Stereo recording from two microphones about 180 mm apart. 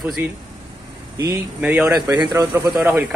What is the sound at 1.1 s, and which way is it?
Speech, 15° right (ahead or behind).